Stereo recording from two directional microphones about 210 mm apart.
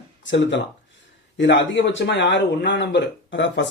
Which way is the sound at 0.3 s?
60° left (ahead or behind).